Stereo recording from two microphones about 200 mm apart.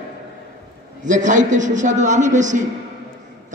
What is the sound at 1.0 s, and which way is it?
A man's voice, 40° right (ahead or behind).